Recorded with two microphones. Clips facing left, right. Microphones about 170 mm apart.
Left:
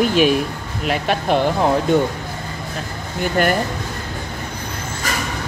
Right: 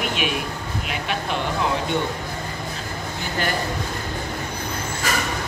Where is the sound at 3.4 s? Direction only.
55° left (ahead or behind).